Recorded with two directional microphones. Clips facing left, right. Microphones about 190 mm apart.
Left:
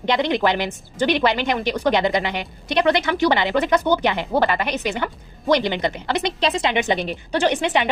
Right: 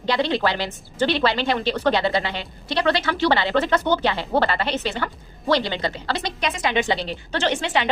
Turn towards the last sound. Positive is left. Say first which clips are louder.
# left 3 dB
turn(degrees=15)  # may be behind; listen again after turning